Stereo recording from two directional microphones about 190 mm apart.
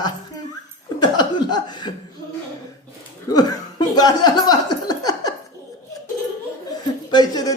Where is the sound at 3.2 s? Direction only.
20° left (ahead or behind).